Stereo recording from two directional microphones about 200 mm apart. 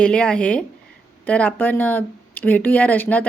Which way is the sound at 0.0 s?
5° left (ahead or behind).